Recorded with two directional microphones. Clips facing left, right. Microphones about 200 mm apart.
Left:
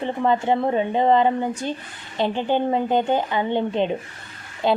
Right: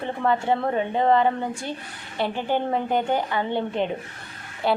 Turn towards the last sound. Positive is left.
turn(degrees=20)  # may be behind; listen again after turning